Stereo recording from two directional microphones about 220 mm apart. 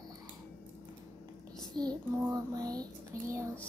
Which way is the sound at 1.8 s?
20° right (ahead or behind).